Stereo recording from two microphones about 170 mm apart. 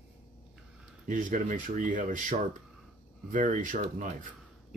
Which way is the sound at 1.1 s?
50° right (ahead or behind).